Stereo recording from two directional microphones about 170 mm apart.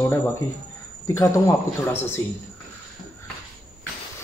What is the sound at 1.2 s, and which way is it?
Speech, 15° left (ahead or behind).